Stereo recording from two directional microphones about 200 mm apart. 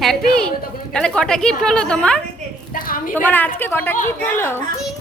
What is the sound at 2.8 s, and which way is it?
Speech, 45° left (ahead or behind).